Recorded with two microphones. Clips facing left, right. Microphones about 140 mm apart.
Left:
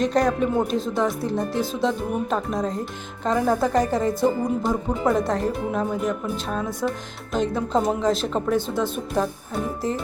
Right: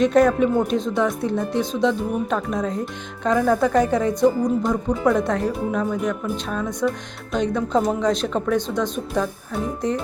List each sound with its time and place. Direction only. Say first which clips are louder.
0.0 s speech: right 4 dB; centre (ahead or behind)